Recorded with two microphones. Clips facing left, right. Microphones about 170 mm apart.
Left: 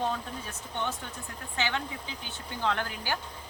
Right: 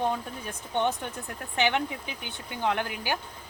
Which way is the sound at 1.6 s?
20° right (ahead or behind).